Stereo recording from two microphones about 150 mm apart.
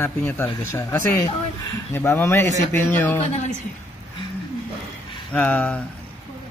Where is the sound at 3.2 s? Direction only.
50° left (ahead or behind).